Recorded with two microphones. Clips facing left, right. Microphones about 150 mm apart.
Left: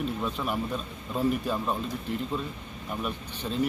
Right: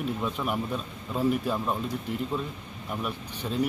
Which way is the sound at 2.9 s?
5° right (ahead or behind).